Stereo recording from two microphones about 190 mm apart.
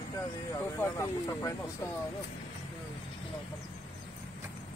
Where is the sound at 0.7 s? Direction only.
15° left (ahead or behind).